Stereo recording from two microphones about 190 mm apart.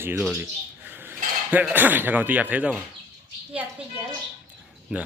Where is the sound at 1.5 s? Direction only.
10° right (ahead or behind).